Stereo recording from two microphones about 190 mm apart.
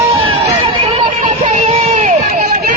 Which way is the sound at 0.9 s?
35° right (ahead or behind).